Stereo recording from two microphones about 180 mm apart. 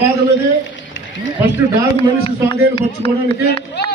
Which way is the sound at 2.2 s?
30° left (ahead or behind).